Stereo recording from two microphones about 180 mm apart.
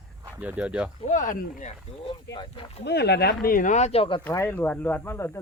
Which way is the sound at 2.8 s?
70° left (ahead or behind).